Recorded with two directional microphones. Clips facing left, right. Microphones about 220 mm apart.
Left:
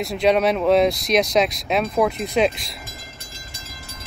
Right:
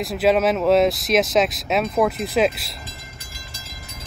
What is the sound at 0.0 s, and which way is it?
Speech, centre (ahead or behind).